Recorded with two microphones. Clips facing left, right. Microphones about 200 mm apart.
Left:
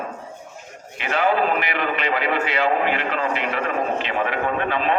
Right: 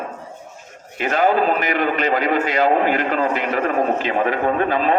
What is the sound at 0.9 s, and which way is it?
A man's voice, 45° right (ahead or behind).